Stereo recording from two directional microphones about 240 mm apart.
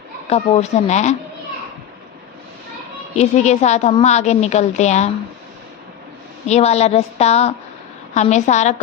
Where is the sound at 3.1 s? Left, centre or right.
Left.